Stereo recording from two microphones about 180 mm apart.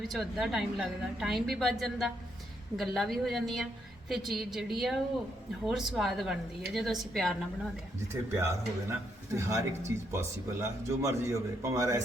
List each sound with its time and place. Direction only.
0.1 s a woman's voice: centre (ahead or behind)
8.1 s speech: 15° right (ahead or behind)